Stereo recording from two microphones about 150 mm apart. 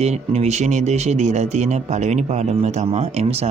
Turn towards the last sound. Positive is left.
turn(degrees=-45)  # may be behind; listen again after turning